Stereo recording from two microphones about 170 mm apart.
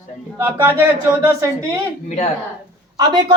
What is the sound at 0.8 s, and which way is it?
Speech, 10° right (ahead or behind).